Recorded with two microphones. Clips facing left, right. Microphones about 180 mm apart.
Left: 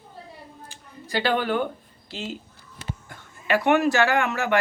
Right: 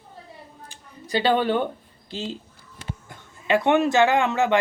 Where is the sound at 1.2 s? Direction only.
25° right (ahead or behind).